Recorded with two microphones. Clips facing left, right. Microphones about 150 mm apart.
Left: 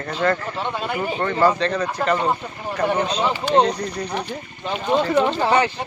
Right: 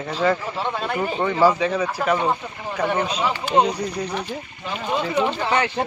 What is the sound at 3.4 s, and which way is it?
Speech, 10° right (ahead or behind).